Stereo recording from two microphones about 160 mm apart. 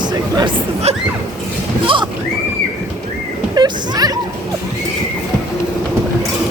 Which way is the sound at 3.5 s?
25° right (ahead or behind).